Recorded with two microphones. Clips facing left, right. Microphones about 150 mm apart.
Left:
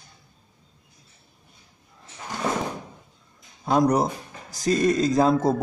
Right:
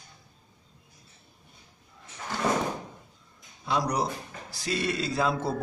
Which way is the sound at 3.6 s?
45° left (ahead or behind).